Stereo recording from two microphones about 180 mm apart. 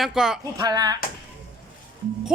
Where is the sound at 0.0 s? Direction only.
Centre (ahead or behind).